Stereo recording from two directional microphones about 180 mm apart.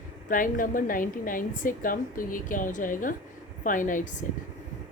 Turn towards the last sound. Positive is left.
turn(degrees=45)  # may be behind; listen again after turning